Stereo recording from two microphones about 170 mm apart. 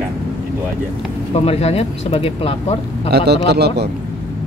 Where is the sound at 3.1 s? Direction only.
75° right (ahead or behind).